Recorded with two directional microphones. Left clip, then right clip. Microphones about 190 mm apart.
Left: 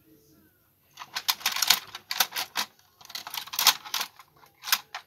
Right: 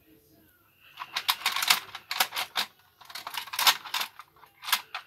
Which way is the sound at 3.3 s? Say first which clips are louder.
Even; 5° left (ahead or behind).